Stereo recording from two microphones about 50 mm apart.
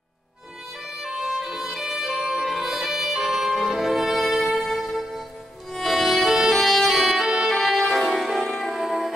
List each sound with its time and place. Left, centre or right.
1.0 s music: centre